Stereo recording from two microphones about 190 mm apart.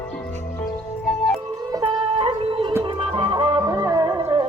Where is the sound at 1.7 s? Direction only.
30° right (ahead or behind).